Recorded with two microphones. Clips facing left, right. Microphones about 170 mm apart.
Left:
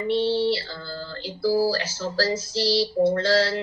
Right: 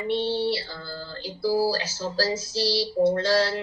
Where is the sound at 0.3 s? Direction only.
15° right (ahead or behind).